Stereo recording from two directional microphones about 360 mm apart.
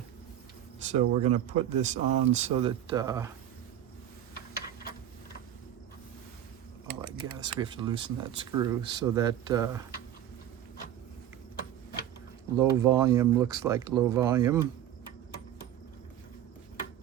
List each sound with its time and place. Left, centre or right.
0.9 s speech: centre
7.3 s speech: centre
12.5 s speech: centre